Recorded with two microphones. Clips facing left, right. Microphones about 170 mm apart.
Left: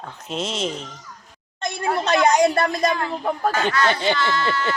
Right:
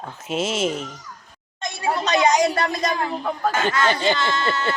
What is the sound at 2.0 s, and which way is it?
Speech, 55° left (ahead or behind).